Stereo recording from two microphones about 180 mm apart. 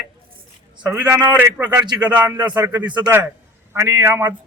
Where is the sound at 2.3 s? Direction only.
25° right (ahead or behind).